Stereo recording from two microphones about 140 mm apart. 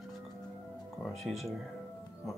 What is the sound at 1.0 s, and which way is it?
Music, centre (ahead or behind).